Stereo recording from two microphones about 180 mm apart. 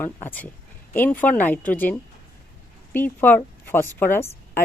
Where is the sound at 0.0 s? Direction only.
10° left (ahead or behind).